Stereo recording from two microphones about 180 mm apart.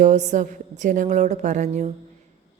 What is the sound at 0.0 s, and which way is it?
A woman's voice, 40° right (ahead or behind).